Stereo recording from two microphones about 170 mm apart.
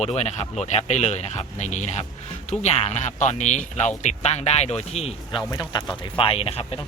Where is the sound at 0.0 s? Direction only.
40° left (ahead or behind).